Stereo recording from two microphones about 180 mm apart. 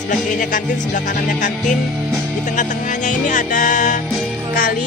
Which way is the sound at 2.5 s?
45° left (ahead or behind).